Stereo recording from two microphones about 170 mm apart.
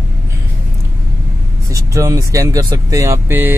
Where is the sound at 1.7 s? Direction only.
20° right (ahead or behind).